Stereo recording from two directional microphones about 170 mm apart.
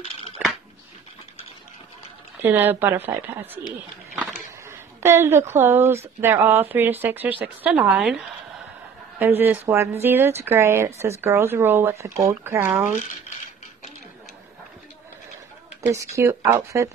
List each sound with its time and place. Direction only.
2.4 s speech: 10° right (ahead or behind)
15.9 s speech: 20° right (ahead or behind)